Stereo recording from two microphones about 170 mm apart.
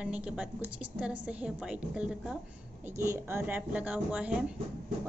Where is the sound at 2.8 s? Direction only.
15° right (ahead or behind).